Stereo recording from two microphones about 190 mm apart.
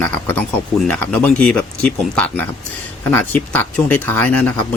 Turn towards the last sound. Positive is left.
turn(degrees=5)  # may be behind; listen again after turning